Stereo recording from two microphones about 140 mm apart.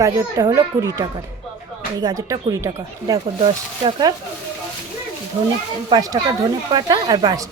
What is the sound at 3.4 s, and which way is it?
Speech, 40° right (ahead or behind).